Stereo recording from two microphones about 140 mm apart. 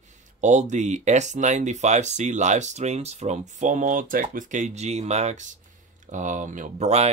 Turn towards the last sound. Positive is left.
turn(degrees=-50)  # may be behind; listen again after turning